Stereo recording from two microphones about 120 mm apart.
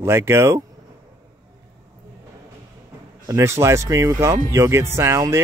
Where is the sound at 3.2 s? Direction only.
25° right (ahead or behind).